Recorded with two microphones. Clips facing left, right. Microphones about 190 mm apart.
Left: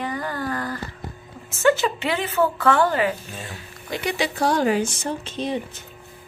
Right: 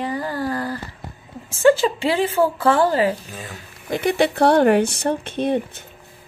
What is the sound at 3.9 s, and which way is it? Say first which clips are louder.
Speech: right 6 dB; 50° right (ahead or behind).